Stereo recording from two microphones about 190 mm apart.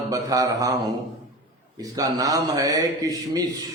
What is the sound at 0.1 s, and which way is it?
A man's voice, 20° right (ahead or behind).